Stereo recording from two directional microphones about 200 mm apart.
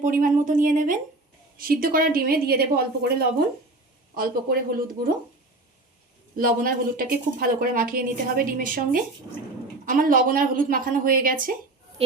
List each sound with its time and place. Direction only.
0.0 s a woman's voice: 40° right (ahead or behind)
6.3 s a woman's voice: 45° right (ahead or behind)
12.0 s speech: 30° right (ahead or behind)